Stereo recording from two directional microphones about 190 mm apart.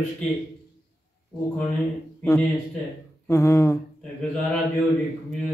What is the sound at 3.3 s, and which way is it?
Speech, 15° left (ahead or behind).